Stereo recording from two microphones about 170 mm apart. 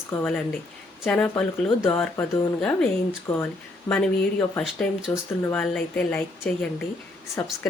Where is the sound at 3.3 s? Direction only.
15° left (ahead or behind).